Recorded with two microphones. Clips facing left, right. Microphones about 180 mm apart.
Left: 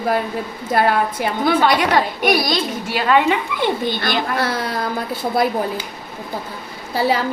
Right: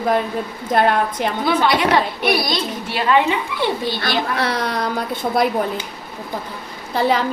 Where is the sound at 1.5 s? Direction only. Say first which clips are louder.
Left 1 dB; 50° left (ahead or behind).